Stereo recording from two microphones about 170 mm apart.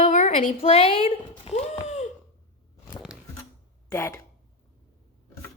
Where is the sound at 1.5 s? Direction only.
40° left (ahead or behind).